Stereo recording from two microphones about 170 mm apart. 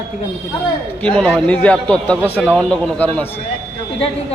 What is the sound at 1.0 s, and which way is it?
A man's voice, 5° left (ahead or behind).